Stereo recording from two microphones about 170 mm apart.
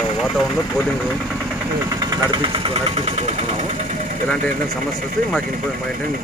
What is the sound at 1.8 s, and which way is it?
Speech, 20° right (ahead or behind).